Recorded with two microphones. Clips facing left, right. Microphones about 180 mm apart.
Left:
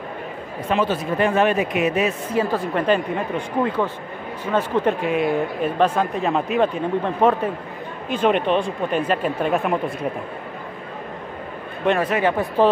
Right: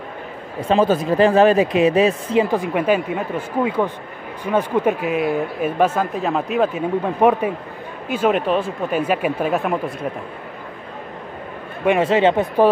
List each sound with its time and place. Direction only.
0.7 s a man's voice: 35° right (ahead or behind)
2.3 s a woman's voice: 15° right (ahead or behind)
7.2 s a woman's voice: 15° right (ahead or behind)
12.0 s speech: 25° right (ahead or behind)